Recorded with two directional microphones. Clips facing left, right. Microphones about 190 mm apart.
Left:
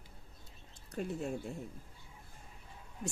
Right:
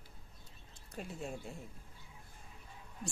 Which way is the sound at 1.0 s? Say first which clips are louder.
Left 6 dB; 60° left (ahead or behind).